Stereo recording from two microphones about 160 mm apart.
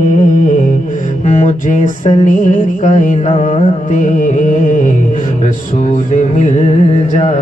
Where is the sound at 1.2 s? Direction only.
50° left (ahead or behind).